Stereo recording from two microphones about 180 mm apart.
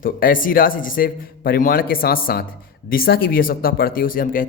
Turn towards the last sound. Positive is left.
turn(degrees=50)  # may be behind; listen again after turning